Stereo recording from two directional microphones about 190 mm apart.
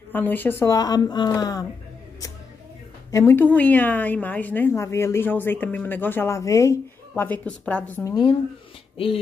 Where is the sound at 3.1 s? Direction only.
15° left (ahead or behind).